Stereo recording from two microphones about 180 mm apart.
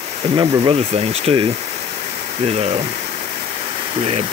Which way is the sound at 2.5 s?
35° right (ahead or behind).